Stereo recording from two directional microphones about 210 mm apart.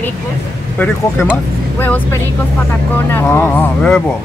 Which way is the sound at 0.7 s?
5° left (ahead or behind).